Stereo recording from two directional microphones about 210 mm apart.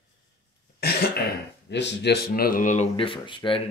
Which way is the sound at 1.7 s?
55° left (ahead or behind).